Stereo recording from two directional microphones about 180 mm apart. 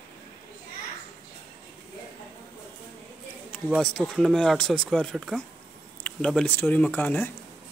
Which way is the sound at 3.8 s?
5° left (ahead or behind).